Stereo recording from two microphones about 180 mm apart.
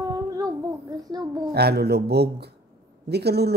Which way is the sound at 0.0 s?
20° right (ahead or behind).